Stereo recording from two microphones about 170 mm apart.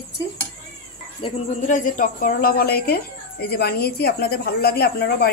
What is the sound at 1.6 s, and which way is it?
Speech, 50° left (ahead or behind).